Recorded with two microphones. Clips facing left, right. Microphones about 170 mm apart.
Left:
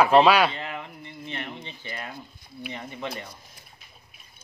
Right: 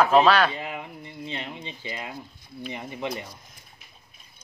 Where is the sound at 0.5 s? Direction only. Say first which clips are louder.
Right 1 dB; 10° right (ahead or behind).